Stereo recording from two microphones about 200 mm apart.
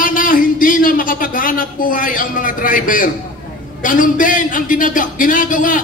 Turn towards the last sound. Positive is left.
turn(degrees=40)  # may be behind; listen again after turning